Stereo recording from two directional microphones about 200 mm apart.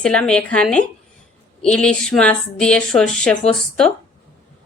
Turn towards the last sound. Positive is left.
turn(degrees=5)  # may be behind; listen again after turning